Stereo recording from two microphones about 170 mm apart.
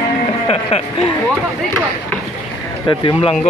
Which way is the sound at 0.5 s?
35° left (ahead or behind).